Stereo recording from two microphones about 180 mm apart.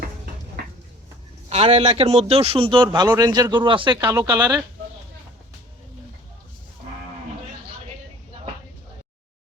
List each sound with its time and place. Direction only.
1.5 s a man's voice: 35° right (ahead or behind)
4.0 s speech: 15° right (ahead or behind)